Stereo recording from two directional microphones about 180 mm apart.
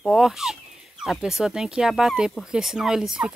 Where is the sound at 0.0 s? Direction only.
Centre (ahead or behind).